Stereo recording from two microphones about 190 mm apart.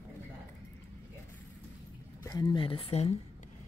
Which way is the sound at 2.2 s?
20° left (ahead or behind).